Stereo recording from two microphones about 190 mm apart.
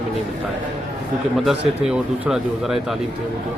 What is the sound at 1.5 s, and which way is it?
Speech, centre (ahead or behind).